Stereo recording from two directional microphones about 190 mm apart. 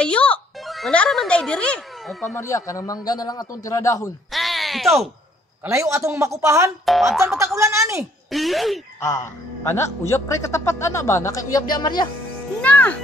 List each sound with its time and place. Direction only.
0.0 s speech: 5° left (ahead or behind)
2.3 s a man's voice: 15° left (ahead or behind)
4.3 s a sound: centre (ahead or behind)
5.6 s speech: 15° right (ahead or behind)
6.9 s boing: centre (ahead or behind)
7.3 s speech: 15° right (ahead or behind)
8.3 s boing: centre (ahead or behind)
9.0 s a man's voice: 15° left (ahead or behind)
12.6 s speech: 5° left (ahead or behind)